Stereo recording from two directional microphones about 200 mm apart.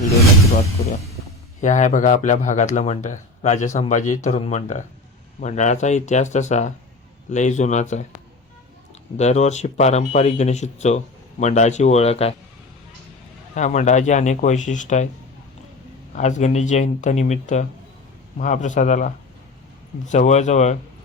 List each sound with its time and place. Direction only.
1.6 s speech: 35° left (ahead or behind)
9.1 s speech: 35° left (ahead or behind)
13.5 s speech: 40° left (ahead or behind)
16.1 s speech: 35° left (ahead or behind)